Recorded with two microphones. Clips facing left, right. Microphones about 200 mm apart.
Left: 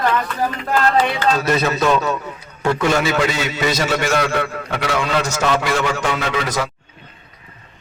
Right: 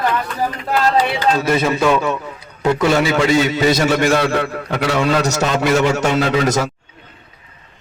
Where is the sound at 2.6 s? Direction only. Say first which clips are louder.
Right 3 dB; 25° right (ahead or behind).